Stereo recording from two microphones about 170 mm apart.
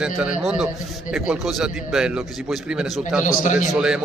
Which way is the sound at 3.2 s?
50° left (ahead or behind).